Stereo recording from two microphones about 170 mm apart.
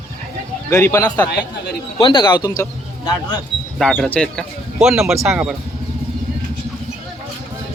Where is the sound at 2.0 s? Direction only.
30° left (ahead or behind).